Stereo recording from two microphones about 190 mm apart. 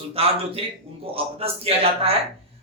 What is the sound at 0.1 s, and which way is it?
A man's voice, 30° right (ahead or behind).